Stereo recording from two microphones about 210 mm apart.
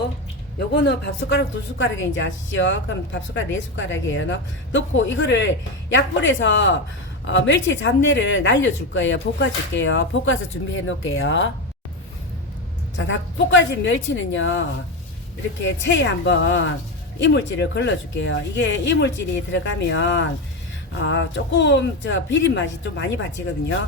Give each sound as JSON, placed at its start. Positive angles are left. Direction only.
{"t": 0.7, "sound": "speech", "side_deg": 50}
{"t": 13.1, "sound": "speech", "side_deg": 60}
{"t": 15.6, "sound": "speech", "side_deg": 55}